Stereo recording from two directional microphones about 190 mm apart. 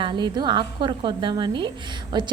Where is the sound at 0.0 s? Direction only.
25° right (ahead or behind).